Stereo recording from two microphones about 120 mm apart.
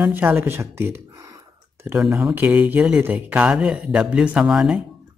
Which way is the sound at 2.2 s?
15° right (ahead or behind).